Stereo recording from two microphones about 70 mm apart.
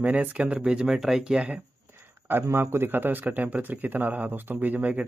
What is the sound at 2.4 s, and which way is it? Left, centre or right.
Speech, right.